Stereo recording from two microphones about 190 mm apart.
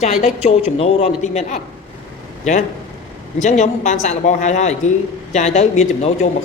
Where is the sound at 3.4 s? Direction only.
40° left (ahead or behind).